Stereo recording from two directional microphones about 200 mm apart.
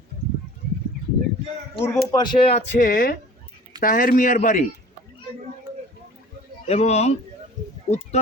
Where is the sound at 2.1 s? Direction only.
20° left (ahead or behind); by 4.7 s 40° left (ahead or behind).